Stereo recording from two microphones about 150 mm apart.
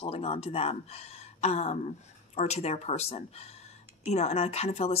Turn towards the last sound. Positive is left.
turn(degrees=45)  # may be behind; listen again after turning